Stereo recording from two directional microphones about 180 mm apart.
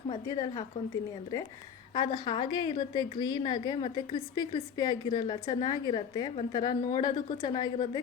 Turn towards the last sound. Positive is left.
turn(degrees=25)  # may be behind; listen again after turning